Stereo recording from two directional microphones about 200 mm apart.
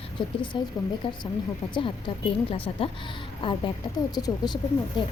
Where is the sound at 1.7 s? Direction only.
25° left (ahead or behind).